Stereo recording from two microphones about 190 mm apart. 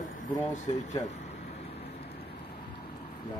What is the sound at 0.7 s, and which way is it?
Speech, 30° left (ahead or behind).